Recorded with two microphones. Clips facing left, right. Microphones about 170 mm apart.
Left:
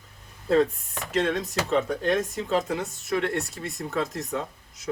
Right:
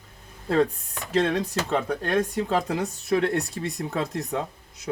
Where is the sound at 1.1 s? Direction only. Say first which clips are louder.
Right 2 dB; 35° right (ahead or behind).